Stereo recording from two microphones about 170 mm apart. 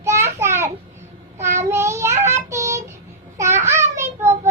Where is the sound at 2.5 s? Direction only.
15° right (ahead or behind).